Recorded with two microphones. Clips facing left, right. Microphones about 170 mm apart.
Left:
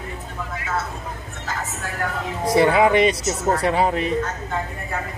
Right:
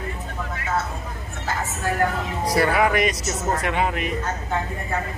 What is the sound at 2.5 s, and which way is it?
Speech, 25° left (ahead or behind).